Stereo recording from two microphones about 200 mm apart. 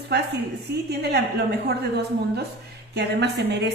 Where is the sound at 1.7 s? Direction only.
55° right (ahead or behind).